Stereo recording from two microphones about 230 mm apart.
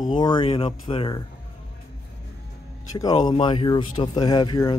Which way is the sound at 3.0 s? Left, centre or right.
Centre.